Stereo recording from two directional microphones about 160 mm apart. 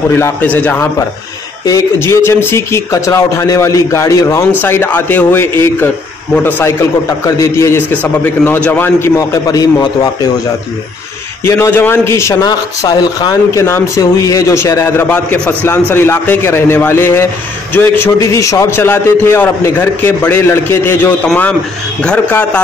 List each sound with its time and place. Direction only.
0.2 s a man's voice: 10° left (ahead or behind)
11.4 s a man's voice: 15° left (ahead or behind)